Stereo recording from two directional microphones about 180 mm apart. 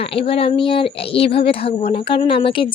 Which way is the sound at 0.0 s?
30° left (ahead or behind).